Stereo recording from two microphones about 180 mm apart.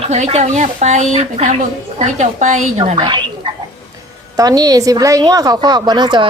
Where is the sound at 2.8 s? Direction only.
25° right (ahead or behind).